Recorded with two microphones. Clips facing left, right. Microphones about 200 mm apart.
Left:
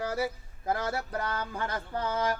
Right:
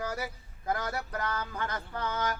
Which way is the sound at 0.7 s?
30° left (ahead or behind).